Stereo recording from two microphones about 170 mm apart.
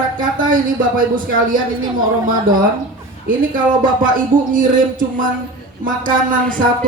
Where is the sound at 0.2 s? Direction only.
55° right (ahead or behind).